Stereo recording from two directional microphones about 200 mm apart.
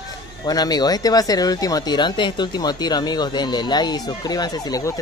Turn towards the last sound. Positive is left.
turn(degrees=20)  # may be behind; listen again after turning